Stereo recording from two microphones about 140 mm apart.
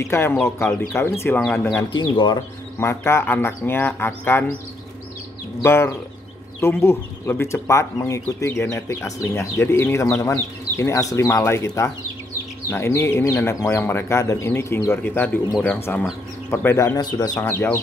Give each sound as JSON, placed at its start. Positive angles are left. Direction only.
{"t": 0.0, "sound": "speech", "side_deg": 20}
{"t": 1.9, "sound": "speech", "side_deg": 35}
{"t": 2.8, "sound": "speech", "side_deg": 20}
{"t": 5.6, "sound": "speech", "side_deg": 15}